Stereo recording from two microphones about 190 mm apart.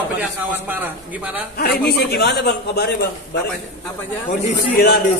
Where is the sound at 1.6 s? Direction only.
55° left (ahead or behind).